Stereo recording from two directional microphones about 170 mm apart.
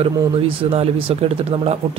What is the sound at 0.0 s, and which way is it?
Speech, 35° right (ahead or behind).